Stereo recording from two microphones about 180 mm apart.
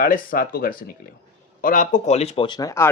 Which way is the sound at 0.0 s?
50° left (ahead or behind).